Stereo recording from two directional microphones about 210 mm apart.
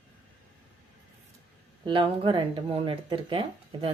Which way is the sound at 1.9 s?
25° right (ahead or behind).